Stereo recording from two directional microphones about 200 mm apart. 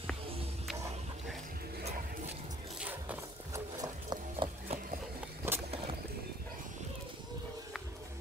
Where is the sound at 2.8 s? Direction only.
10° right (ahead or behind); by 4.7 s 25° right (ahead or behind).